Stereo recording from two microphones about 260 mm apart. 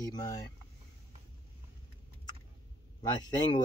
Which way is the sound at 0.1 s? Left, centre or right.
Centre.